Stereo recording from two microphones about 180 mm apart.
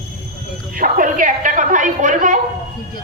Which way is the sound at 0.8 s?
50° right (ahead or behind).